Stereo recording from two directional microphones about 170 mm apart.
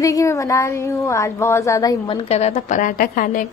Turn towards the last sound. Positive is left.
turn(degrees=50)  # may be behind; listen again after turning